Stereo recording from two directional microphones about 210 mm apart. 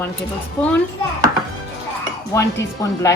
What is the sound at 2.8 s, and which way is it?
Speech, 15° left (ahead or behind).